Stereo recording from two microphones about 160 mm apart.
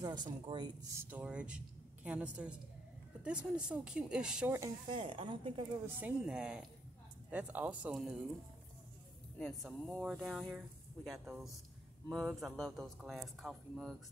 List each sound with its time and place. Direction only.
0.0 s speech: 25° right (ahead or behind)
0.9 s speech: 10° right (ahead or behind)
4.8 s speech: 35° right (ahead or behind)
5.9 s speech: 10° right (ahead or behind)
9.4 s speech: centre (ahead or behind)